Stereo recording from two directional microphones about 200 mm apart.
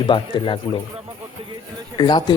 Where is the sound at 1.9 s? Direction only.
20° left (ahead or behind).